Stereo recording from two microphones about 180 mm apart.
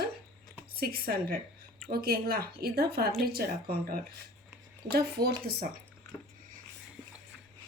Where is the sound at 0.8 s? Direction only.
60° right (ahead or behind).